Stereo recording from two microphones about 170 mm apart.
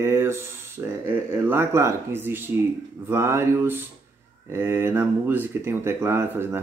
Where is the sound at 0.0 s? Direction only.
15° right (ahead or behind).